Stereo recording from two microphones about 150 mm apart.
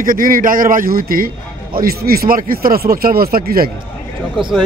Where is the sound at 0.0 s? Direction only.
65° right (ahead or behind).